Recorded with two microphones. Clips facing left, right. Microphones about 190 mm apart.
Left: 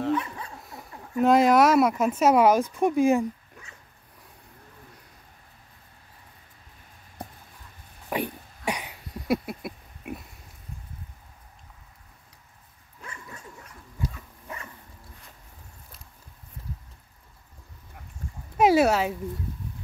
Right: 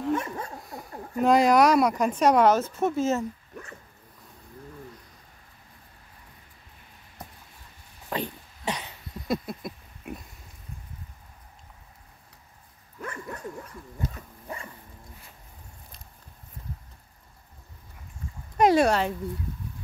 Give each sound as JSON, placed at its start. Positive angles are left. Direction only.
{"t": 0.1, "sound": "dog", "side_deg": -45}
{"t": 1.2, "sound": "speech", "side_deg": 0}
{"t": 8.1, "sound": "a sound", "side_deg": 10}
{"t": 13.0, "sound": "bow-wow", "side_deg": -60}
{"t": 14.1, "sound": "dog", "side_deg": -30}
{"t": 18.6, "sound": "speech", "side_deg": 5}